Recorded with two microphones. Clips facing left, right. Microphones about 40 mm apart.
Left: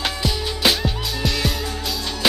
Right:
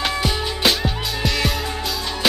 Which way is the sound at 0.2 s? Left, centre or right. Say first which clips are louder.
Right 2 dB; centre.